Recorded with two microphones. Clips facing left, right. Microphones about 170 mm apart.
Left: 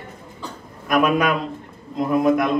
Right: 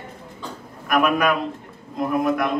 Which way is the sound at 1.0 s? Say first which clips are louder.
Left 1 dB; 25° left (ahead or behind).